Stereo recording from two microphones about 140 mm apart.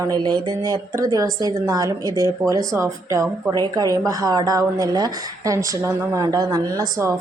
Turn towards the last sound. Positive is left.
turn(degrees=-25)  # may be behind; listen again after turning